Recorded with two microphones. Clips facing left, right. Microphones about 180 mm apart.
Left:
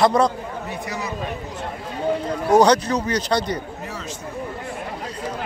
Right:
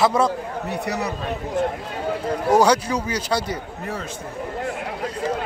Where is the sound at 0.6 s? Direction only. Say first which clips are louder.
Right 5 dB; 65° right (ahead or behind).